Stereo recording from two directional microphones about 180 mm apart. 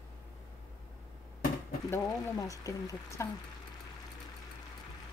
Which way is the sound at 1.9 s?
20° left (ahead or behind).